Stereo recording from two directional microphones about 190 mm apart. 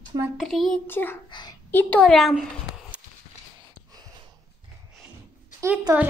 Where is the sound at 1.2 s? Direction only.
25° left (ahead or behind).